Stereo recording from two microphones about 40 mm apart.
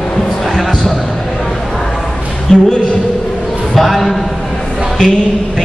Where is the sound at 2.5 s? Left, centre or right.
Left.